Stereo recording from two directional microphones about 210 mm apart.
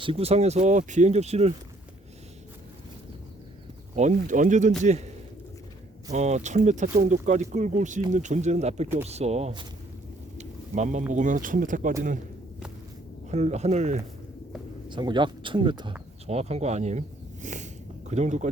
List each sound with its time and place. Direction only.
0.0 s speech: 25° right (ahead or behind)
3.9 s speech: 35° right (ahead or behind)
13.3 s speech: 30° right (ahead or behind)
14.8 s speech: 20° right (ahead or behind)
17.4 s a sound: 35° right (ahead or behind)
18.1 s speech: 35° right (ahead or behind)